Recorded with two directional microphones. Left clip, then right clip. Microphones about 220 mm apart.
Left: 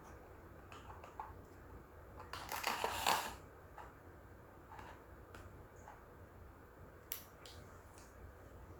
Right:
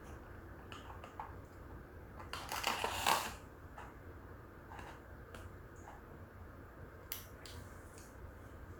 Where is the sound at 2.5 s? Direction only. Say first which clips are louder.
Right 2 dB; centre (ahead or behind).